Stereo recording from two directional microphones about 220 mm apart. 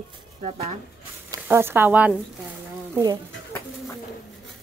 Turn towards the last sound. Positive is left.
turn(degrees=-15)  # may be behind; listen again after turning